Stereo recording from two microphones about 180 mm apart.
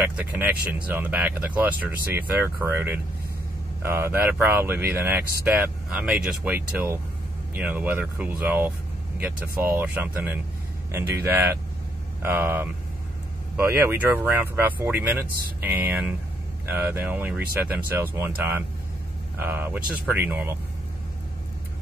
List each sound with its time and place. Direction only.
0.0 s speech: 5° right (ahead or behind)
9.8 s speech: 10° right (ahead or behind)